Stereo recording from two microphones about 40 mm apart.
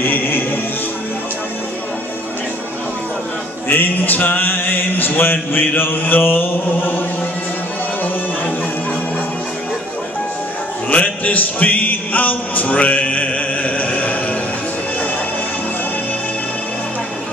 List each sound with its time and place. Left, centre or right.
0.0 s music: left
3.6 s music: left
10.9 s music: left